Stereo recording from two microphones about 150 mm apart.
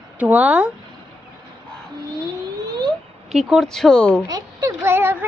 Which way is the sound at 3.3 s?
Centre (ahead or behind).